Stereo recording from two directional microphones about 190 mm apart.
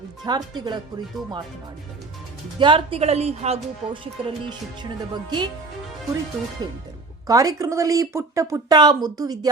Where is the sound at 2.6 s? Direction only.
25° right (ahead or behind).